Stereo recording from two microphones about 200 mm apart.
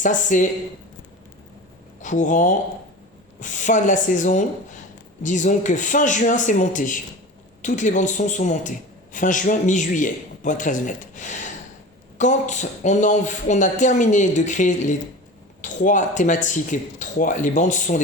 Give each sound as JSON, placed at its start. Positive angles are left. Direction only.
{"t": 0.0, "sound": "speech", "side_deg": 40}
{"t": 2.0, "sound": "speech", "side_deg": 40}